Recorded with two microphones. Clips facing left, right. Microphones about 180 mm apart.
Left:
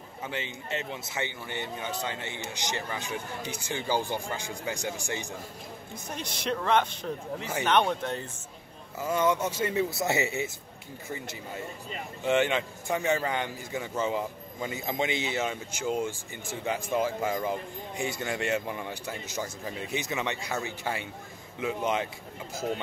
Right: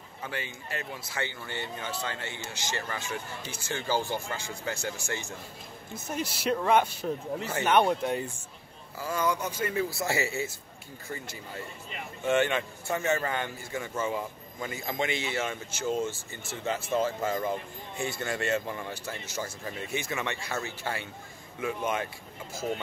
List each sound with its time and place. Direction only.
0.2 s a man's voice: 20° left (ahead or behind)
5.9 s speech: 5° right (ahead or behind)
9.0 s a man's voice: 25° left (ahead or behind)